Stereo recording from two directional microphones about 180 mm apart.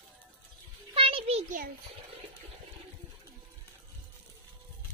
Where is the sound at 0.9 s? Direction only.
30° right (ahead or behind).